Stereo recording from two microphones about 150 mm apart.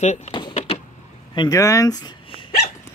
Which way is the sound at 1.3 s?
25° left (ahead or behind).